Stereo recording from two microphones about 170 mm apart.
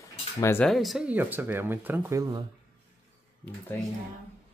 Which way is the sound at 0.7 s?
Centre (ahead or behind).